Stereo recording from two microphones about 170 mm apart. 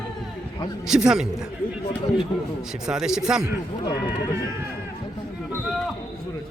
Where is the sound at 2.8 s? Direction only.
5° right (ahead or behind).